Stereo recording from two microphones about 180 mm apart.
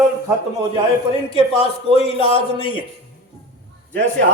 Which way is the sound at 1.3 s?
30° left (ahead or behind).